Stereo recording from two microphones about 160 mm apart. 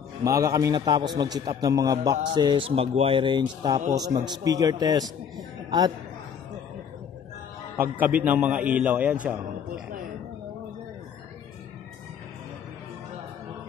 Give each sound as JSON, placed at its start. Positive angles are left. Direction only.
{"t": 0.2, "sound": "a man's voice", "side_deg": -20}
{"t": 8.0, "sound": "a man's voice", "side_deg": -10}